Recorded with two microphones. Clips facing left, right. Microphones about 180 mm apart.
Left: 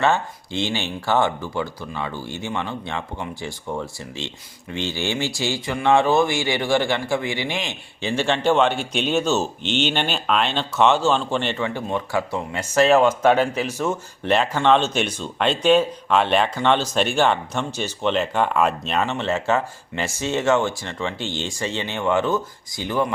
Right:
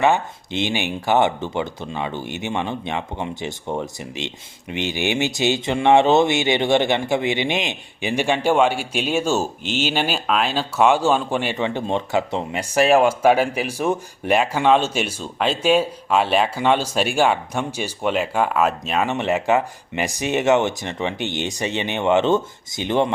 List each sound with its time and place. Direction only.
0.0 s speech: 15° right (ahead or behind)
11.6 s speech: 25° right (ahead or behind)